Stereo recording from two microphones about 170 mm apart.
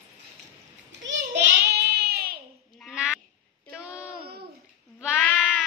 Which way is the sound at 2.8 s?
5° right (ahead or behind).